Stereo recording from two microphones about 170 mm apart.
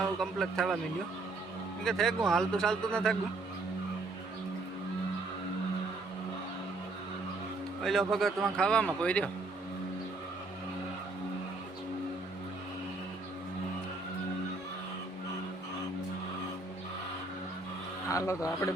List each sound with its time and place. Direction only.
0.2 s a man's voice: centre (ahead or behind)
1.8 s a man's voice: 5° left (ahead or behind)
7.9 s a man's voice: centre (ahead or behind)
18.1 s a man's voice: 20° left (ahead or behind)